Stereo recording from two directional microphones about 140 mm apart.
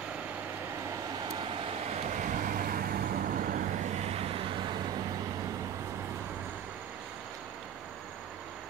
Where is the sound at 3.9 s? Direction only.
45° right (ahead or behind).